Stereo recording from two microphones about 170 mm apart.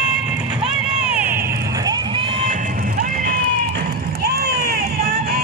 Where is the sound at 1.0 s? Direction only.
10° right (ahead or behind); by 3.8 s 60° right (ahead or behind).